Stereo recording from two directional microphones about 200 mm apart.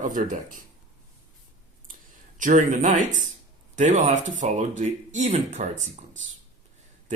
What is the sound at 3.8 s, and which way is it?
Speech, 35° right (ahead or behind).